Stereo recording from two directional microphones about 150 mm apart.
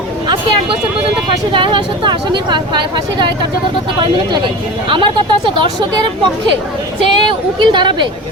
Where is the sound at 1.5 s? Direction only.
35° right (ahead or behind).